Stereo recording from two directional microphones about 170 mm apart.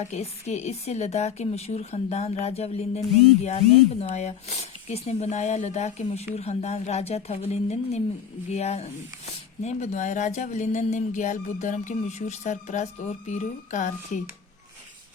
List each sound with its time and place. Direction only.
0.0 s speech: 40° left (ahead or behind)